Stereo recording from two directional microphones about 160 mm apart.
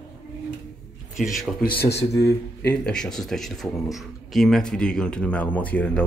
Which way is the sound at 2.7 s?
5° left (ahead or behind).